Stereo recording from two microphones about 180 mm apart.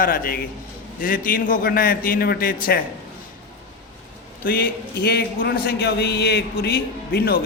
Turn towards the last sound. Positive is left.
turn(degrees=60)  # may be behind; listen again after turning